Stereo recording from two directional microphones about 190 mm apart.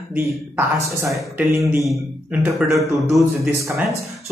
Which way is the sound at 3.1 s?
Centre (ahead or behind).